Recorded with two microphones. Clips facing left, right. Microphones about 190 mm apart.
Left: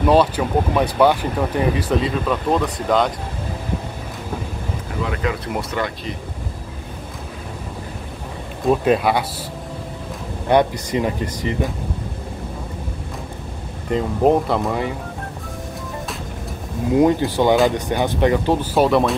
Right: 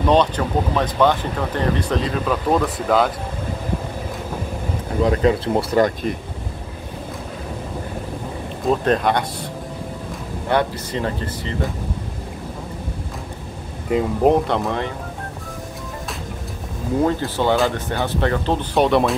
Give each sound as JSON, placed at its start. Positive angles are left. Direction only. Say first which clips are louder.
{"t": 0.1, "sound": "speech", "louder": "left 1 dB", "side_deg": 10}
{"t": 5.0, "sound": "speech", "louder": "right 7 dB", "side_deg": -35}
{"t": 8.6, "sound": "speech", "louder": "left 2 dB", "side_deg": 5}
{"t": 10.5, "sound": "speech", "louder": "left 4 dB", "side_deg": 15}
{"t": 13.8, "sound": "speech", "louder": "even", "side_deg": -5}
{"t": 16.9, "sound": "speech", "louder": "left 4 dB", "side_deg": 15}